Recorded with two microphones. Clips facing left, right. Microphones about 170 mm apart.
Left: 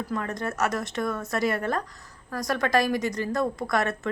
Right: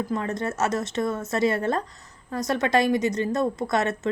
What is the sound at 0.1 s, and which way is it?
A woman's voice, 25° right (ahead or behind).